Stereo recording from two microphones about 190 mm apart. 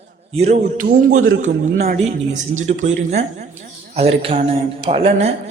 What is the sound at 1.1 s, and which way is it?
Speech, 90° right.